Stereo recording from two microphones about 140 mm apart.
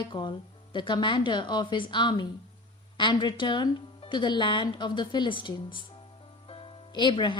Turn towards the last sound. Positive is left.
turn(degrees=35)  # may be behind; listen again after turning